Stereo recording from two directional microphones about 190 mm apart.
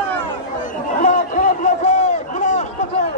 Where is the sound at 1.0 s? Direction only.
40° left (ahead or behind).